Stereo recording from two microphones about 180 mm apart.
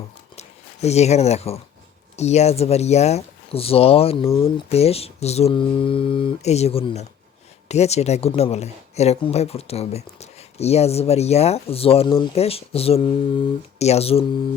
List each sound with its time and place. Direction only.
0.3 s speech: 35° left (ahead or behind)